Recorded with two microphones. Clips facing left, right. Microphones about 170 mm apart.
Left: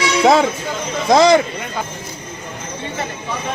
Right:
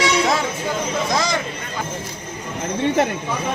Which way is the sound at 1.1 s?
65° left (ahead or behind).